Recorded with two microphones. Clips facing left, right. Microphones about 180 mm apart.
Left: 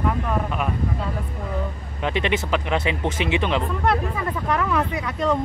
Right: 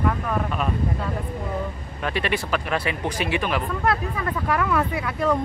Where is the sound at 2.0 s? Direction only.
20° left (ahead or behind).